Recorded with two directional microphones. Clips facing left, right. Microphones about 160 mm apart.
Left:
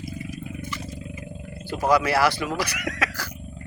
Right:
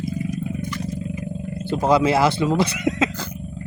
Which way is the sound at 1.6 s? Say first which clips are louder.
Right 4 dB; 25° right (ahead or behind).